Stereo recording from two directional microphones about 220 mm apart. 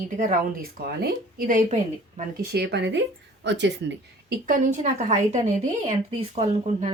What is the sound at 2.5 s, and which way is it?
Speech, 50° right (ahead or behind).